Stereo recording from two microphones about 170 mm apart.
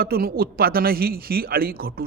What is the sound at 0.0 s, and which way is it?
A man's voice, 60° right (ahead or behind).